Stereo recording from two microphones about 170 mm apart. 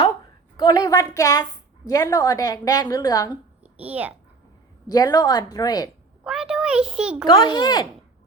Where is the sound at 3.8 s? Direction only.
10° right (ahead or behind).